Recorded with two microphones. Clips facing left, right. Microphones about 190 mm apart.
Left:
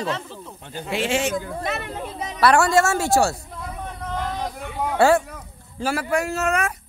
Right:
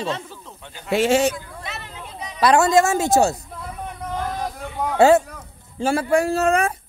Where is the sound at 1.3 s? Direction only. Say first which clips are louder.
Left 8 dB; 50° left (ahead or behind).